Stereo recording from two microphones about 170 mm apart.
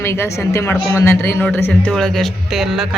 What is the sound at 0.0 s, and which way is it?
A man's voice, 15° left (ahead or behind).